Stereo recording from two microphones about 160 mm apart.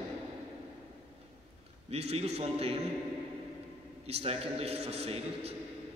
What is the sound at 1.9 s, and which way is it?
A man's voice, 40° right (ahead or behind).